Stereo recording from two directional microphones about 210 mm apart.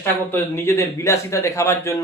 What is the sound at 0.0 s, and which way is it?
Speech, 10° left (ahead or behind).